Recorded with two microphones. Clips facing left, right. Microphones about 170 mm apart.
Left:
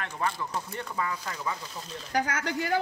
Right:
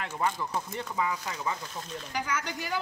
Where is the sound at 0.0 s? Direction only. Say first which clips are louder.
Right 1 dB; 10° right (ahead or behind).